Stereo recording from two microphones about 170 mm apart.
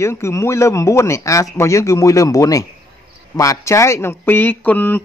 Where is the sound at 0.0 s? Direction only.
15° left (ahead or behind).